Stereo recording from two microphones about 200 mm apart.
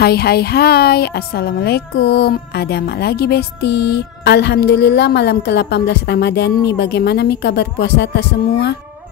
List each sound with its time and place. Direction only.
0.0 s speech: 50° left (ahead or behind)